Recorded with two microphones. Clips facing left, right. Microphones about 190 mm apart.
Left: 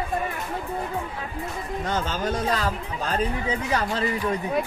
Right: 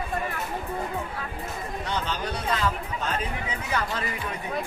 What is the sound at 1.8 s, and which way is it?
Speech, 45° left (ahead or behind).